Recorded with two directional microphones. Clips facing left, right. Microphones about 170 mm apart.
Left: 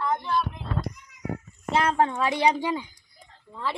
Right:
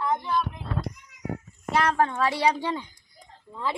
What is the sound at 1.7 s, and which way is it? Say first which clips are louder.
Speech: even; 20° left (ahead or behind).